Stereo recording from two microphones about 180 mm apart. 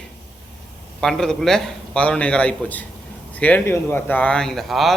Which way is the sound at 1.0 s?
5° left (ahead or behind).